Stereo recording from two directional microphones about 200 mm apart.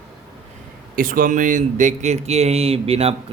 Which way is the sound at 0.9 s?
45° right (ahead or behind).